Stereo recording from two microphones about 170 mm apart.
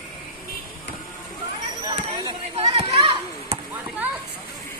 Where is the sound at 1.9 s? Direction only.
30° right (ahead or behind).